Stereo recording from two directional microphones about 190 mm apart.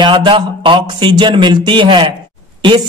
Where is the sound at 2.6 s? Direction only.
25° right (ahead or behind).